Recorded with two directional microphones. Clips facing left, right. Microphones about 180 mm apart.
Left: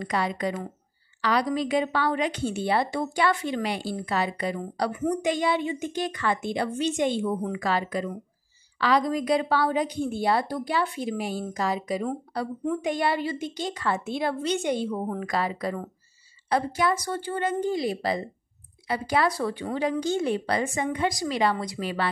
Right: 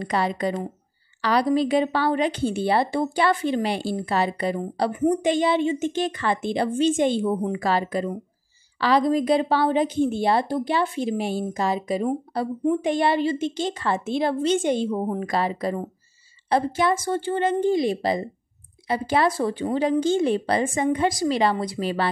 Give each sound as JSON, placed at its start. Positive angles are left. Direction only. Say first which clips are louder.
{"t": 0.0, "sound": "a woman's voice", "louder": "right 3 dB", "side_deg": -30}